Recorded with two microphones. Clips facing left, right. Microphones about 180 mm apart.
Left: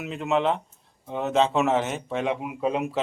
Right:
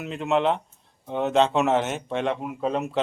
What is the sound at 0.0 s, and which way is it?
Speech, centre (ahead or behind).